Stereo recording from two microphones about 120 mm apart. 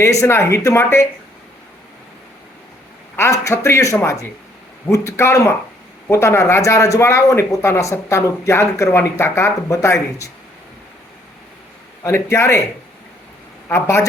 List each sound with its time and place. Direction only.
0.0 s speech: 25° left (ahead or behind)
3.2 s speech: 25° left (ahead or behind)
12.0 s speech: 25° left (ahead or behind)
13.7 s speech: 20° left (ahead or behind)